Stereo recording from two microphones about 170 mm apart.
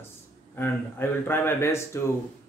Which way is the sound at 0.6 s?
10° left (ahead or behind).